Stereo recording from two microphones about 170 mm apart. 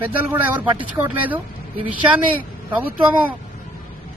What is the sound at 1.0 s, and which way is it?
Speech, 10° right (ahead or behind).